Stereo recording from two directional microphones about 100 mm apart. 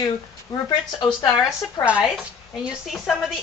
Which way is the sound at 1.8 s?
15° right (ahead or behind).